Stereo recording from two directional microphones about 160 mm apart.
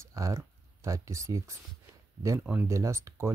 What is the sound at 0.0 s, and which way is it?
Speech, 20° right (ahead or behind).